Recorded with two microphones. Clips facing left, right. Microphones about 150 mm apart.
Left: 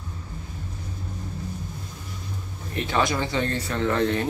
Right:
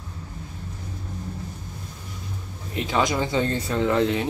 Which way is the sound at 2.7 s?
15° right (ahead or behind).